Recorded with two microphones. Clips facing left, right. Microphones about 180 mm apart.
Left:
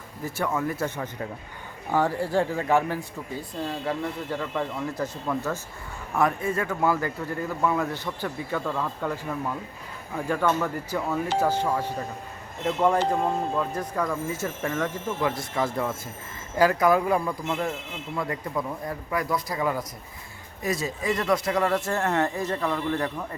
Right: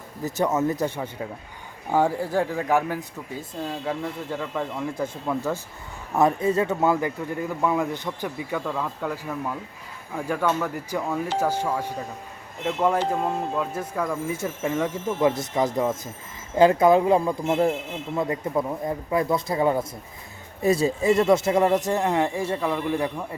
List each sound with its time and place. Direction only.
0.3 s a man's voice: 20° right (ahead or behind)
0.9 s speech: 10° right (ahead or behind)
10.2 s a man's voice: 5° right (ahead or behind)